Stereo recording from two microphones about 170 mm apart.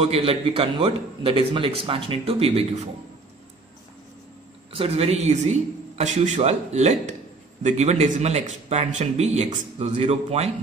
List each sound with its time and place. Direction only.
0.0 s speech: 35° right (ahead or behind)
4.7 s speech: 35° right (ahead or behind)